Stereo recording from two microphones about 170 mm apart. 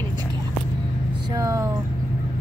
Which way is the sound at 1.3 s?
20° right (ahead or behind).